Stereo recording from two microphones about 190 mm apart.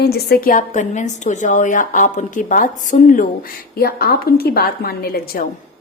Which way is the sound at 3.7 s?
55° left (ahead or behind).